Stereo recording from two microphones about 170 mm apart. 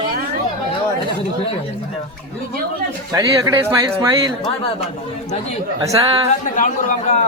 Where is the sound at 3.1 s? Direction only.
20° right (ahead or behind).